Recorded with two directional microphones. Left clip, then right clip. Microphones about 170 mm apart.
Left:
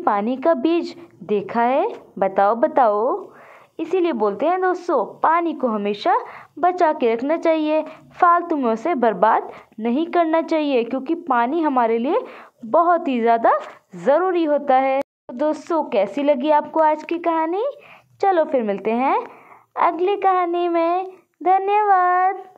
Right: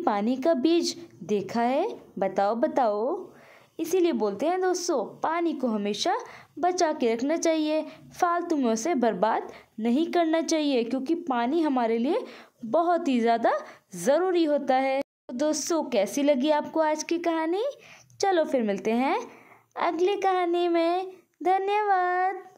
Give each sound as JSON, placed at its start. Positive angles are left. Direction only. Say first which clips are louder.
{"t": 0.0, "sound": "a woman's voice", "louder": "left 6 dB", "side_deg": -20}